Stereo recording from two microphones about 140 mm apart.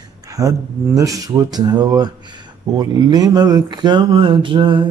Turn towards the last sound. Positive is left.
turn(degrees=-35)  # may be behind; listen again after turning